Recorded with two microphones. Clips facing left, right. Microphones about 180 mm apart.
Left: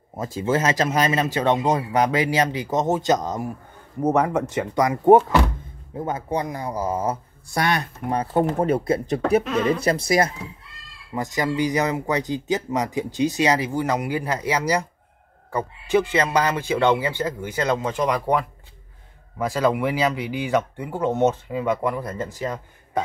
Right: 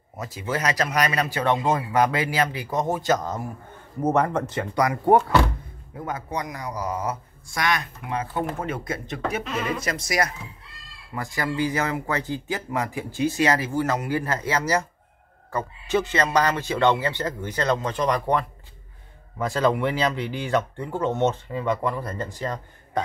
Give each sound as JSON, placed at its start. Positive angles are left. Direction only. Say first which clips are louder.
{"t": 0.1, "sound": "speech", "louder": "left 6 dB", "side_deg": 25}
{"t": 4.6, "sound": "speech", "louder": "left 1 dB", "side_deg": 20}